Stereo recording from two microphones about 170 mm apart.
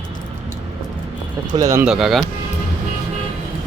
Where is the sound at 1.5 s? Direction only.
20° right (ahead or behind).